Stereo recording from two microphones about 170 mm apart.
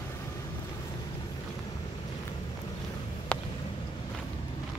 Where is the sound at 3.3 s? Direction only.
10° left (ahead or behind).